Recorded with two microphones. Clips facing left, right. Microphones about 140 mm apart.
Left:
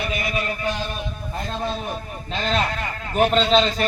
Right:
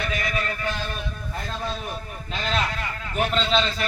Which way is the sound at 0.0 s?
15° left (ahead or behind).